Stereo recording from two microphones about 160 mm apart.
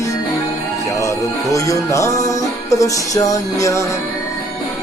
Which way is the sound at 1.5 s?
20° left (ahead or behind).